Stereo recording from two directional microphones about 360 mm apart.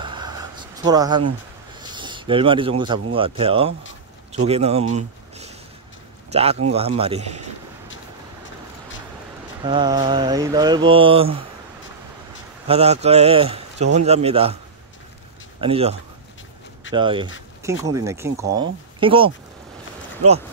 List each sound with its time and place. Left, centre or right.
0.0 s a sound: centre
1.8 s speech: centre
4.3 s mantra: centre
6.3 s mantra: centre
9.6 s mantra: centre
12.6 s mantra: centre
15.6 s mantra: centre